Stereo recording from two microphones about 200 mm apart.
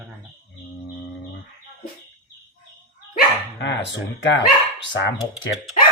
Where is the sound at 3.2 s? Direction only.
60° left (ahead or behind).